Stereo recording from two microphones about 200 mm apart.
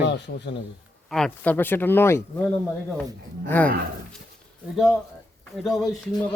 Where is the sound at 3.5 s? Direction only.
10° left (ahead or behind).